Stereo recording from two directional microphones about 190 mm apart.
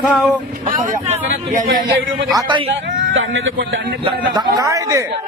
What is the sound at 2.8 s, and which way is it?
Speech, 85° right.